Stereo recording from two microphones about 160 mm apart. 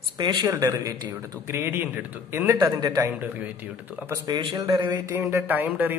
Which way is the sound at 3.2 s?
10° right (ahead or behind).